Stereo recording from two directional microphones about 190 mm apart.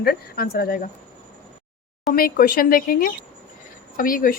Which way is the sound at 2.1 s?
50° left (ahead or behind).